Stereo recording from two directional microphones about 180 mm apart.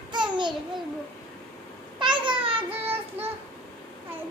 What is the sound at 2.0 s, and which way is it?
Babbling, 25° right (ahead or behind).